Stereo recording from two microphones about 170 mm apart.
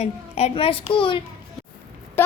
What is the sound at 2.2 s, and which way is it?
Speech, 15° left (ahead or behind).